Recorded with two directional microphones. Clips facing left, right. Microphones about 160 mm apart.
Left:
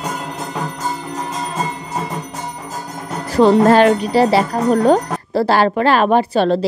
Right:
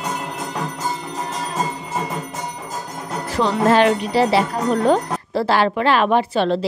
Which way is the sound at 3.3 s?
45° left (ahead or behind).